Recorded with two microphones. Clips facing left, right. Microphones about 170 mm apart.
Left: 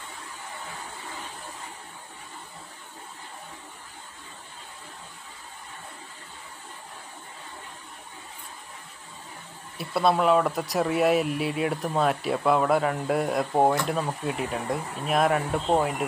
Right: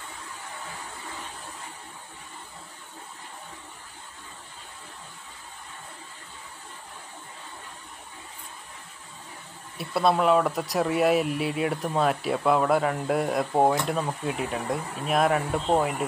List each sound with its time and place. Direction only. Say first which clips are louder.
9.8 s speech: even; centre (ahead or behind)